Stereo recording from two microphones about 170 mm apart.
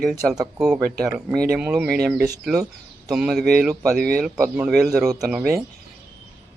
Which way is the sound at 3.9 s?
65° right (ahead or behind).